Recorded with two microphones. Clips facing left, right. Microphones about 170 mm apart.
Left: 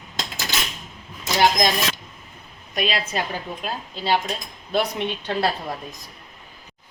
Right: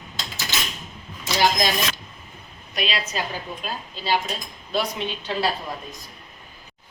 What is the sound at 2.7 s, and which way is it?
Speech, 45° left (ahead or behind).